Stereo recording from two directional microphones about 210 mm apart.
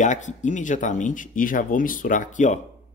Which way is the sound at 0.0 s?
35° left (ahead or behind).